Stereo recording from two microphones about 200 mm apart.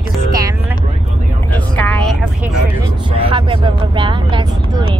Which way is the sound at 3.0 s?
25° right (ahead or behind).